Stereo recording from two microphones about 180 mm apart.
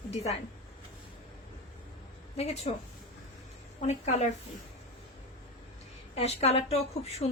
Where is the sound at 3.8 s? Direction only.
40° left (ahead or behind).